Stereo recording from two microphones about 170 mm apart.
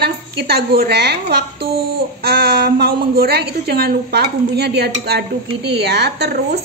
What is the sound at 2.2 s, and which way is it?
A woman's voice, 70° right (ahead or behind).